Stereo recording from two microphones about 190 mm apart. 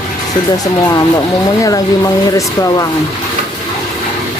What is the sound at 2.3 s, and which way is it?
Speech, 20° left (ahead or behind).